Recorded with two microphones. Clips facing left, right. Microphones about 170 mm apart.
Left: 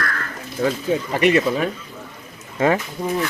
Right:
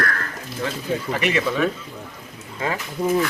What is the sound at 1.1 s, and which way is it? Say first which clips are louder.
Speech: left 7 dB; 35° left (ahead or behind).